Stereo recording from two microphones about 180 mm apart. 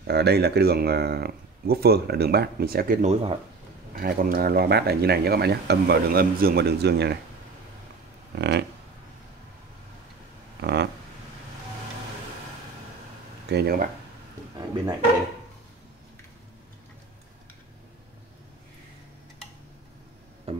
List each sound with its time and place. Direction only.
0.0 s speech: 65° right (ahead or behind)
3.0 s speech: 35° right (ahead or behind)
3.9 s speech: 55° right (ahead or behind)
8.4 s speech: 70° right (ahead or behind)
10.6 s a sound: 65° right (ahead or behind)
13.5 s speech: 60° right (ahead or behind)